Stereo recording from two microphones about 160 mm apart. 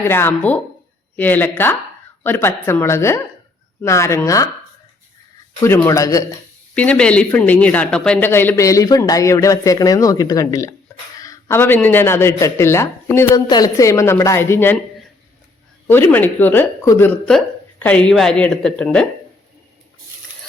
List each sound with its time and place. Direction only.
0.1 s speech: 10° left (ahead or behind)
5.5 s speech: 15° left (ahead or behind)
6.7 s speech: 10° left (ahead or behind)
15.9 s a woman's voice: 10° left (ahead or behind)